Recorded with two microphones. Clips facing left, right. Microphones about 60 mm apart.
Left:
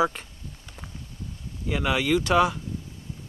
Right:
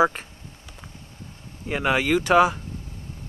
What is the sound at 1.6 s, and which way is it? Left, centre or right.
Speech, right.